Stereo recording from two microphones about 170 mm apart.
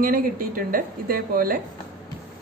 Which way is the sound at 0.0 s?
60° right (ahead or behind).